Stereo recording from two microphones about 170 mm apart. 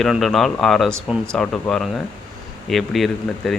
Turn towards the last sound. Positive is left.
turn(degrees=0)  # may be behind; listen again after turning